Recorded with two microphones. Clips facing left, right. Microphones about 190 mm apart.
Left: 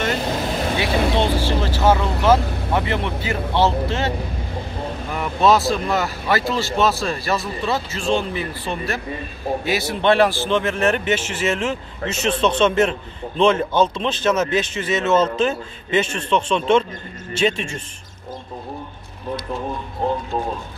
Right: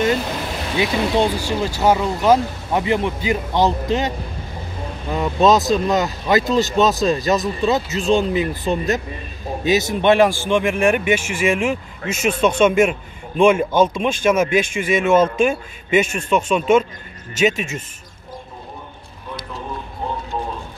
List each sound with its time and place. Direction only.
0.7 s speech: 15° right (ahead or behind)
5.1 s speech: 20° right (ahead or behind)